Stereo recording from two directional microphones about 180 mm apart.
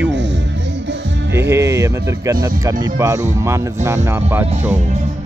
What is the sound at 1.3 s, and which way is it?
A man's voice, 15° right (ahead or behind).